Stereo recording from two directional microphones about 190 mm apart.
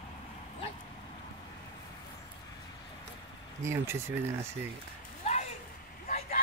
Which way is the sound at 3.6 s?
15° right (ahead or behind).